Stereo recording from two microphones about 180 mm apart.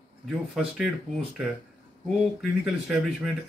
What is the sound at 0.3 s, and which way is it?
Speech, 5° right (ahead or behind).